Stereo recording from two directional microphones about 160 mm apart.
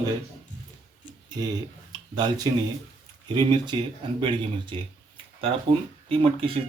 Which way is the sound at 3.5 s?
25° right (ahead or behind).